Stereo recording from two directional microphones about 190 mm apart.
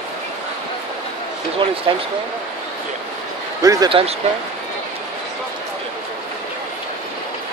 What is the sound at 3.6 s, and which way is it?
Speech, 20° right (ahead or behind).